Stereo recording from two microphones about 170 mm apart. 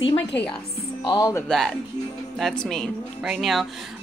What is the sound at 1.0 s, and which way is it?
Speech, 20° left (ahead or behind).